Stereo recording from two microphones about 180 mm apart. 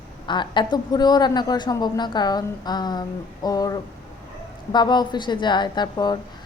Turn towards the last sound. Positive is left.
turn(degrees=25)  # may be behind; listen again after turning